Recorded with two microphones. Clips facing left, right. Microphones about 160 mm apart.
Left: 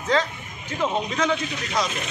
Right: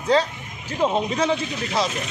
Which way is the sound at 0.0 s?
35° right (ahead or behind).